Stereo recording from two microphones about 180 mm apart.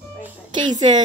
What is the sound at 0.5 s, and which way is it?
Speech, 25° right (ahead or behind).